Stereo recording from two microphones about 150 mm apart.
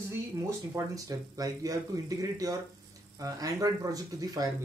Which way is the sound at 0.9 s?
25° right (ahead or behind).